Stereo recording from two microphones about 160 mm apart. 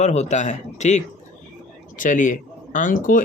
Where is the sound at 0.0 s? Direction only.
45° left (ahead or behind).